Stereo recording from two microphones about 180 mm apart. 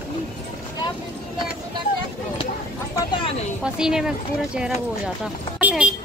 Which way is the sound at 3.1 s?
30° left (ahead or behind).